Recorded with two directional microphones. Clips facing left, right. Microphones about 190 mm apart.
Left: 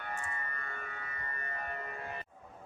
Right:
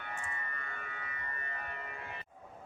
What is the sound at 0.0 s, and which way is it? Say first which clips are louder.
Music: left 2 dB; 40° left (ahead or behind).